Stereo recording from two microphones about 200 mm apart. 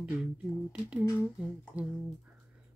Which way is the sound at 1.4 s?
5° right (ahead or behind).